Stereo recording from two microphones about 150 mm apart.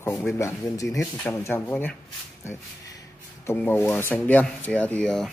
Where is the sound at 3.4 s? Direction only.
15° left (ahead or behind).